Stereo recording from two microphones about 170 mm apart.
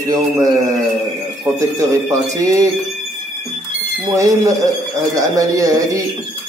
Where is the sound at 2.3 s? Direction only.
20° right (ahead or behind).